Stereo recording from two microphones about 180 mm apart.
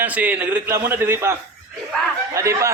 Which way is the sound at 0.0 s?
10° right (ahead or behind).